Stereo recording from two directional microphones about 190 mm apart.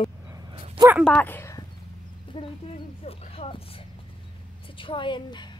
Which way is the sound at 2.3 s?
25° left (ahead or behind).